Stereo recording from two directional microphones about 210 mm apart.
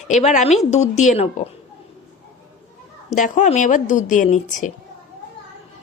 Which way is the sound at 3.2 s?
35° left (ahead or behind).